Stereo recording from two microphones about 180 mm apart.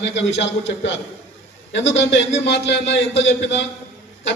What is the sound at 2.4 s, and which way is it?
A man's voice, 80° left.